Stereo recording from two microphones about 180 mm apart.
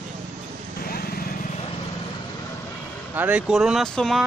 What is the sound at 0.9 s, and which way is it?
Vehicle, 55° left (ahead or behind).